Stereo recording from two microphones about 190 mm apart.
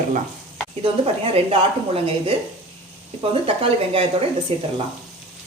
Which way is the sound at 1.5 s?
30° right (ahead or behind).